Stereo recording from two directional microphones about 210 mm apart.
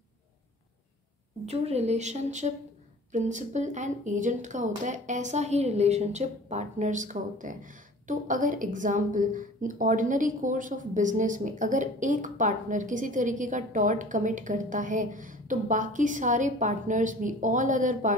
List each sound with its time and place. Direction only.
1.4 s speech: 30° right (ahead or behind)